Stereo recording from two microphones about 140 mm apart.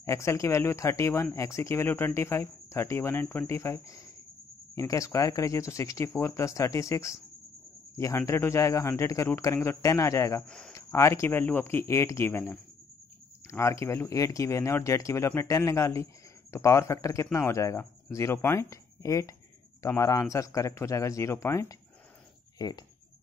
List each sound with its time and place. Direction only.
0.0 s speech: 20° left (ahead or behind)
10.4 s speech: 5° left (ahead or behind)
10.7 s speech: 20° left (ahead or behind)